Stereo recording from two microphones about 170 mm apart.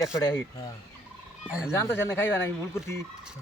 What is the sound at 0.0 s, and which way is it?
Speech, 15° left (ahead or behind).